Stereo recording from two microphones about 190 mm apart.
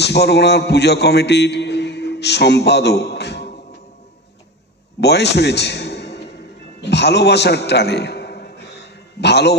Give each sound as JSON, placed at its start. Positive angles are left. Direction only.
{"t": 0.0, "sound": "a man's voice", "side_deg": 60}
{"t": 5.0, "sound": "a man's voice", "side_deg": 60}